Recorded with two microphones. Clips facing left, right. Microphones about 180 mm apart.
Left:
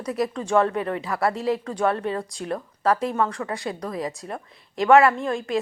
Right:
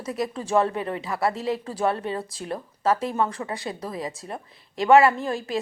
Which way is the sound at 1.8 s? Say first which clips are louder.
Left 2 dB; 30° right (ahead or behind).